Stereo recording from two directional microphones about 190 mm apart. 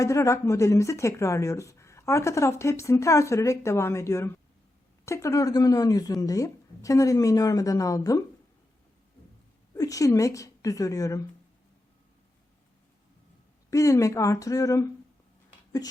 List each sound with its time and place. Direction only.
0.0 s speech: 15° left (ahead or behind)
9.7 s speech: 15° left (ahead or behind)
13.7 s speech: 15° left (ahead or behind)